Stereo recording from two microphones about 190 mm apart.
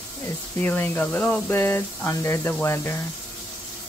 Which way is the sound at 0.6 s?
10° left (ahead or behind).